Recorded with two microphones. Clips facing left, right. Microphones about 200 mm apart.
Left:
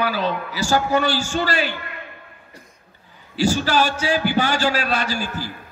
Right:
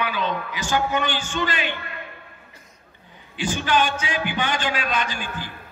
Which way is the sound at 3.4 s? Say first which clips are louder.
Left 3 dB; 40° left (ahead or behind).